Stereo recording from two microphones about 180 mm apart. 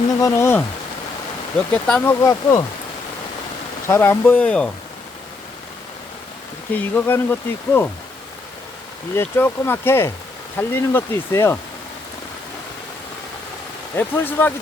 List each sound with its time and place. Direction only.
0.2 s speech: 15° left (ahead or behind)
2.2 s speech: 15° left (ahead or behind)
3.8 s speech: 15° left (ahead or behind)
6.7 s speech: 10° left (ahead or behind)
9.1 s speech: 10° left (ahead or behind)
13.9 s speech: 10° left (ahead or behind)